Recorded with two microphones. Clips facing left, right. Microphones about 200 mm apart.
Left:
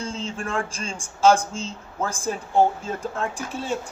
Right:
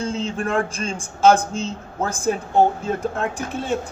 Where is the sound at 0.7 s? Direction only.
60° right (ahead or behind).